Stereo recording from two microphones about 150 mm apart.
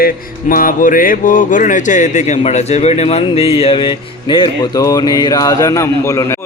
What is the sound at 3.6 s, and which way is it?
Music, 35° left (ahead or behind).